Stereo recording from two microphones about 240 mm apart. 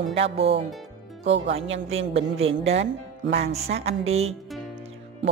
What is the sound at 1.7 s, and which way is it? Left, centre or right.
Speech, right.